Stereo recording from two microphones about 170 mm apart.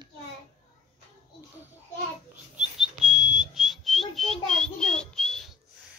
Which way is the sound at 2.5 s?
5° right (ahead or behind).